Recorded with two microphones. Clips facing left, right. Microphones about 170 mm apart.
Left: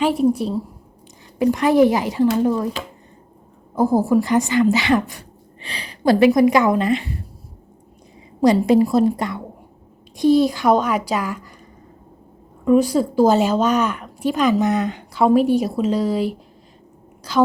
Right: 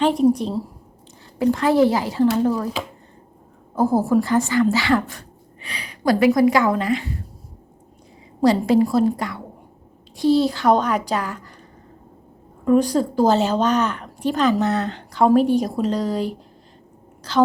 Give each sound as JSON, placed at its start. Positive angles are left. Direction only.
{"t": 0.0, "sound": "a woman's voice", "side_deg": 5}
{"t": 1.4, "sound": "speech", "side_deg": 15}
{"t": 3.8, "sound": "speech", "side_deg": 15}
{"t": 5.6, "sound": "speech", "side_deg": 30}
{"t": 8.4, "sound": "speech", "side_deg": 15}
{"t": 12.6, "sound": "speech", "side_deg": 5}